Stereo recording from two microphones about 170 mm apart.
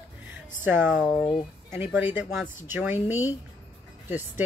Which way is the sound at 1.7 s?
10° right (ahead or behind).